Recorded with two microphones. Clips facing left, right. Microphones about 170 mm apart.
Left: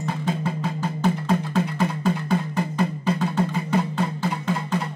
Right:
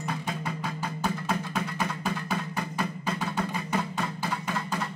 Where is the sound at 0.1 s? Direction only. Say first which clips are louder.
Left 7 dB; 25° left (ahead or behind).